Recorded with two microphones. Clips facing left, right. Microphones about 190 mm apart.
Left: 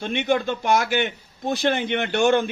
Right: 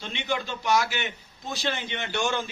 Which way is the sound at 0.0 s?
55° left (ahead or behind).